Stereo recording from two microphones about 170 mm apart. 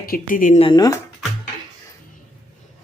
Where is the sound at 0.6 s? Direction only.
25° left (ahead or behind).